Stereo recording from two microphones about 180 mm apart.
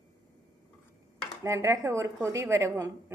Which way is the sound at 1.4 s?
15° right (ahead or behind).